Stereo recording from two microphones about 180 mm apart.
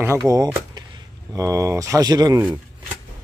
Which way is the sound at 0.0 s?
15° right (ahead or behind).